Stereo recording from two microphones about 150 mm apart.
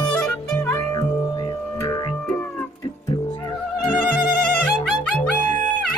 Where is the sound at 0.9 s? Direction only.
25° left (ahead or behind).